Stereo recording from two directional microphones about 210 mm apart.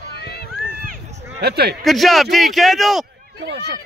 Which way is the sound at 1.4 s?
50° right (ahead or behind).